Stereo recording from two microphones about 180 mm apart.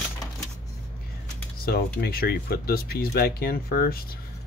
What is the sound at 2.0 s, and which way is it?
Speech, 55° left (ahead or behind).